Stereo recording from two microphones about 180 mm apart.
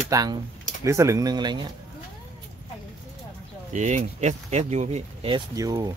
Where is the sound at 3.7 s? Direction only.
40° right (ahead or behind).